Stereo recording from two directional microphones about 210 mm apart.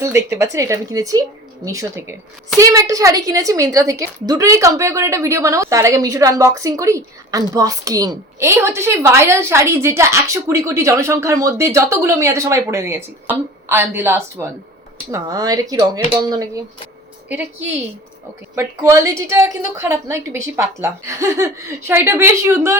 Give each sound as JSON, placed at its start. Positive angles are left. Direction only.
{"t": 0.0, "sound": "a woman's voice", "side_deg": -15}
{"t": 18.5, "sound": "a woman's voice", "side_deg": -15}